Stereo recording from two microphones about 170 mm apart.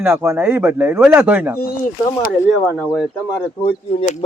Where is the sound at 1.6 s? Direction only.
60° left (ahead or behind).